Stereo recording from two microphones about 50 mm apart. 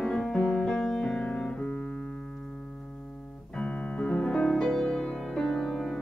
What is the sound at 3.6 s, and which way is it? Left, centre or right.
Music, left.